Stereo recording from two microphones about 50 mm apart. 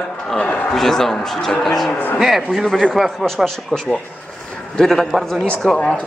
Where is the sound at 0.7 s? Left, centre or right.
Centre.